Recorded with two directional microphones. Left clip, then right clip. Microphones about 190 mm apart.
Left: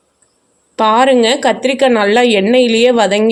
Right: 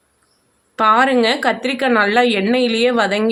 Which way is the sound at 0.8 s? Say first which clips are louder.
Left 3 dB; 15° left (ahead or behind).